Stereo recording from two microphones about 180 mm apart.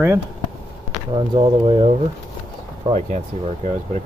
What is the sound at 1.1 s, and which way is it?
Speech, 25° right (ahead or behind).